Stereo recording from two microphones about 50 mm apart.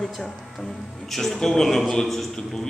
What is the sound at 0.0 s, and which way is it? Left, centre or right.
A man's voice, centre.